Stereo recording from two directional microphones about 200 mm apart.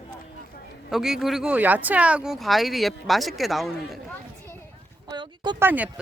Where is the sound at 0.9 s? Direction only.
Centre (ahead or behind).